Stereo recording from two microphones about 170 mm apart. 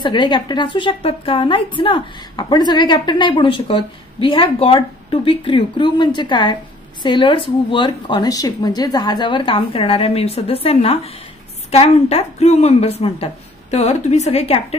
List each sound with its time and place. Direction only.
0.0 s a woman's voice: 25° left (ahead or behind)